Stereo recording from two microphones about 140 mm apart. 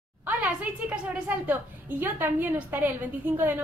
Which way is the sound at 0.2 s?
10° right (ahead or behind).